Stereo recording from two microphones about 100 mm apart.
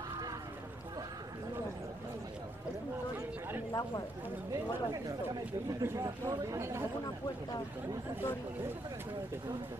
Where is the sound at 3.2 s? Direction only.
20° right (ahead or behind).